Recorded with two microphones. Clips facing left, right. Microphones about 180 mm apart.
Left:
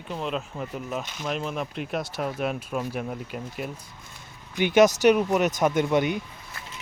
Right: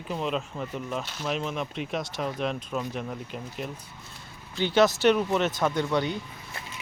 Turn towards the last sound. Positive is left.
turn(degrees=-25)  # may be behind; listen again after turning